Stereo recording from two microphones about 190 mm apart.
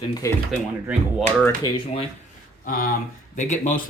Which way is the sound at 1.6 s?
25° left (ahead or behind).